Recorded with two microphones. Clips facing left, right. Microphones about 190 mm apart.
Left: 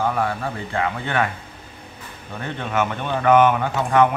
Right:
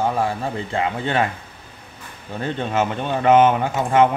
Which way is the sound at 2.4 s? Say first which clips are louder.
Right 2 dB; 25° right (ahead or behind).